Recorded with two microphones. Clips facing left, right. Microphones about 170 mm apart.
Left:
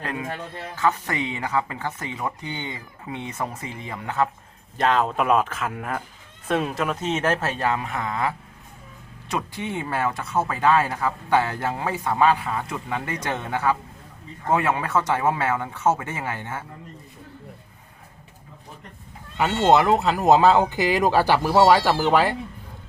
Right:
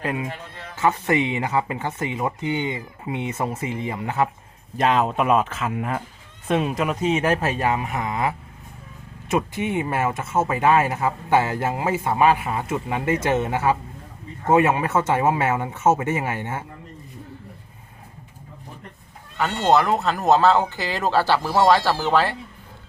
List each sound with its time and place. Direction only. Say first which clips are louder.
0.0 s speech: right 2 dB; 15° right (ahead or behind)
4.8 s speech: right 1 dB; 5° right (ahead or behind)
9.3 s speech: right 5 dB; 20° right (ahead or behind)
19.7 s speech: even; centre (ahead or behind)
20.2 s speech: left 1 dB; 15° left (ahead or behind)